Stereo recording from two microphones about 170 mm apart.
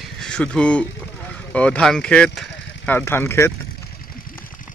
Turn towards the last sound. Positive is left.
turn(degrees=15)  # may be behind; listen again after turning